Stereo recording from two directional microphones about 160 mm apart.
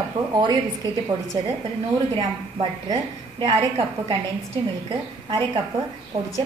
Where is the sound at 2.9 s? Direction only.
25° right (ahead or behind).